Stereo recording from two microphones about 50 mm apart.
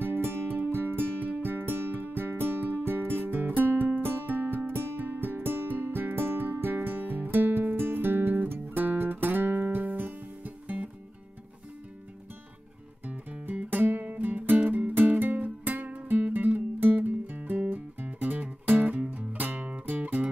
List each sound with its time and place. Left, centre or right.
0.0 s music: right
13.0 s music: right